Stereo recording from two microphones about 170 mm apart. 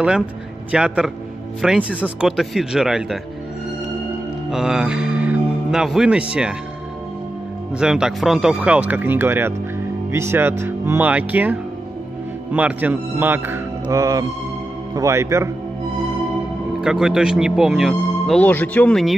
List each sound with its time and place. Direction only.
0.7 s speech: 5° right (ahead or behind)
4.5 s speech: 5° right (ahead or behind)
7.7 s speech: 5° right (ahead or behind)
13.8 s music: 20° right (ahead or behind)
15.0 s speech: 15° right (ahead or behind)
16.8 s speech: 5° right (ahead or behind)